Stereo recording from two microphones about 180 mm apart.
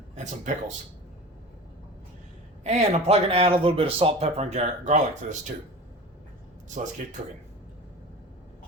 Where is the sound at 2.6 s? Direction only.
40° right (ahead or behind).